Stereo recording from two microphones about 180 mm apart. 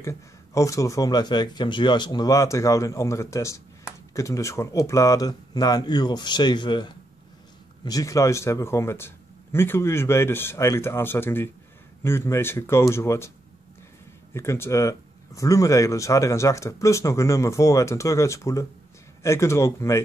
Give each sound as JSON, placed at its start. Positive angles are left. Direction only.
{"t": 0.6, "sound": "speech", "side_deg": 20}
{"t": 14.3, "sound": "speech", "side_deg": 15}